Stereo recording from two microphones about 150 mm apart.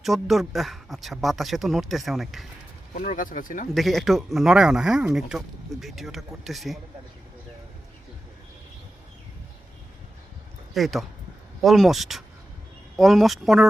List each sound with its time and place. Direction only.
0.0 s a man's voice: centre (ahead or behind)
2.9 s speech: 60° left (ahead or behind)
3.8 s a man's voice: centre (ahead or behind)
10.8 s a man's voice: centre (ahead or behind)